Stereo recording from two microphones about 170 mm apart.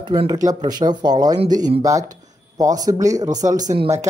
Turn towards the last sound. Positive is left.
turn(degrees=-20)  # may be behind; listen again after turning